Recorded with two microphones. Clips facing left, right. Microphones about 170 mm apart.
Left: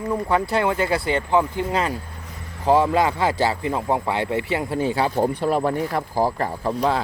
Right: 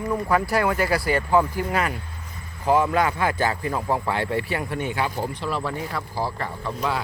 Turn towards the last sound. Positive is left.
turn(degrees=35)  # may be behind; listen again after turning